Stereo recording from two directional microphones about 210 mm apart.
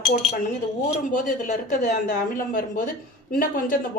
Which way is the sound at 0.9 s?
35° left (ahead or behind).